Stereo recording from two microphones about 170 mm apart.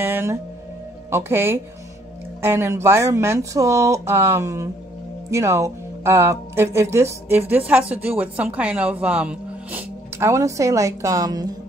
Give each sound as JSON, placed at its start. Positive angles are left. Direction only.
{"t": 0.0, "sound": "music", "side_deg": -15}
{"t": 1.1, "sound": "speech", "side_deg": -15}